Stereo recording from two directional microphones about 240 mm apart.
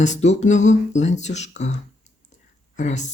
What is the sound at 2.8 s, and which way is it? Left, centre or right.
Speech, left.